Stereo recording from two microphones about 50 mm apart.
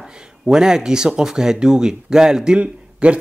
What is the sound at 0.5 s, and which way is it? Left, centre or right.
Speech, centre.